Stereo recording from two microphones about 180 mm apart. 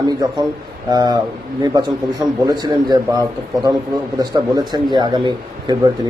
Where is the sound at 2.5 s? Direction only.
20° right (ahead or behind).